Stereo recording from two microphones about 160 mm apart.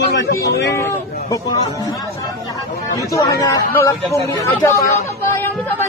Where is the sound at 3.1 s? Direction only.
20° left (ahead or behind).